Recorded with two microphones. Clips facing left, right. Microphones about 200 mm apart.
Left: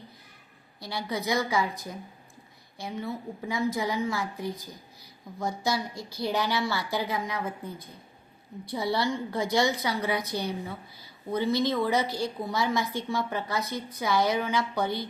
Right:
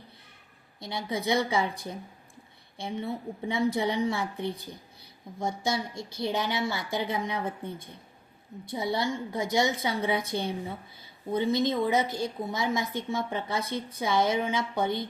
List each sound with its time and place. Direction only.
0.8 s a woman's voice: 20° right (ahead or behind)